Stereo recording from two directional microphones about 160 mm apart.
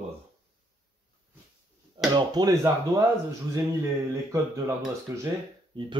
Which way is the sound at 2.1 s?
25° right (ahead or behind).